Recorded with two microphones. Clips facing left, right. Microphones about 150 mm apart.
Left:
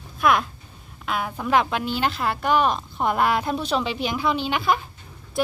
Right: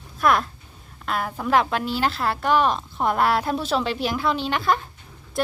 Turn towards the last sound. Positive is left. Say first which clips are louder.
# left 1 dB
turn(degrees=0)  # may be behind; listen again after turning